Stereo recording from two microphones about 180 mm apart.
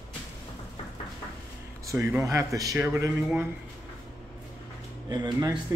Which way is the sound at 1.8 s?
15° right (ahead or behind).